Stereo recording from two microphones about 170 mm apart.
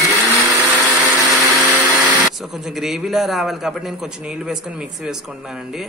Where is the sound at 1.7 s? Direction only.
20° right (ahead or behind).